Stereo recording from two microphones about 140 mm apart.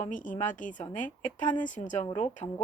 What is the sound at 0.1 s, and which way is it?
Speech, 65° left (ahead or behind).